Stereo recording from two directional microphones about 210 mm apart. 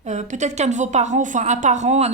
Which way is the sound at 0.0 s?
35° right (ahead or behind).